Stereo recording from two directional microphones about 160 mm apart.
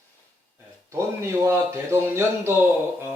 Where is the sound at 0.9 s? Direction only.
20° right (ahead or behind).